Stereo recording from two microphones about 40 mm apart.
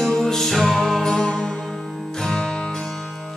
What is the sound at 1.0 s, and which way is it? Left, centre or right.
Music, centre.